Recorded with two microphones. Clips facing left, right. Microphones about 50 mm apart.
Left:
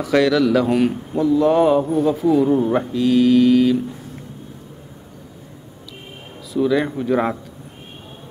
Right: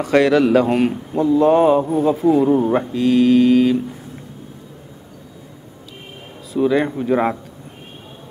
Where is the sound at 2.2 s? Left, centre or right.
Right.